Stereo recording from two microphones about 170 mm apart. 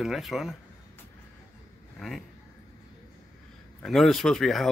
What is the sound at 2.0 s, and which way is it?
Speech, centre (ahead or behind).